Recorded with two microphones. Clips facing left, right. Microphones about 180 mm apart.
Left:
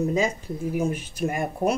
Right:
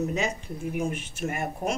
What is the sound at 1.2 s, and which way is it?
Speech, 35° left (ahead or behind).